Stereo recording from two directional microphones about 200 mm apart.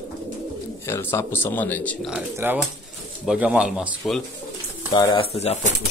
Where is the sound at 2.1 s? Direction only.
10° right (ahead or behind).